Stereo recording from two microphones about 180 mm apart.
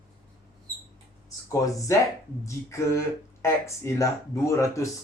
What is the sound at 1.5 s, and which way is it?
Speech, 20° left (ahead or behind).